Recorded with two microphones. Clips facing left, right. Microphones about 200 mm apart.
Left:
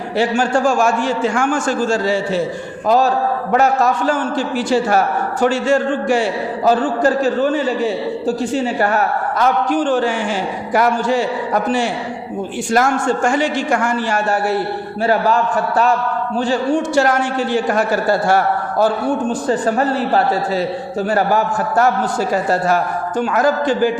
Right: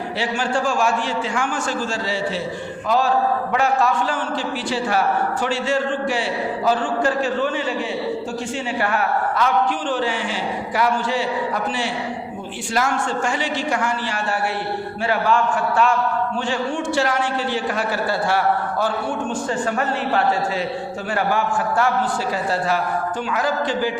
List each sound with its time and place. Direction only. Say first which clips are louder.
0.2 s a man's voice: left 8 dB; 45° left (ahead or behind)